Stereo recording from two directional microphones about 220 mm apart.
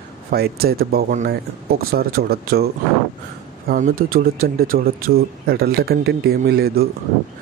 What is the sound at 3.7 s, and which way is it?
Speech, 40° right (ahead or behind).